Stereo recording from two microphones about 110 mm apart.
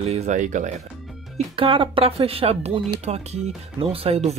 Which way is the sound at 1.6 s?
55° right (ahead or behind).